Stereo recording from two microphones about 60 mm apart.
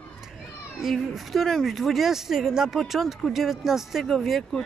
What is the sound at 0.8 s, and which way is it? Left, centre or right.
Speech, centre.